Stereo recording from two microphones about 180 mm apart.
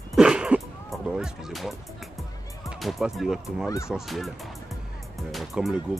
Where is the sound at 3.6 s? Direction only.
15° left (ahead or behind).